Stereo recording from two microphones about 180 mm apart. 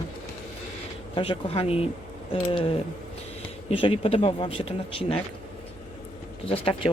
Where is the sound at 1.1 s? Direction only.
30° left (ahead or behind).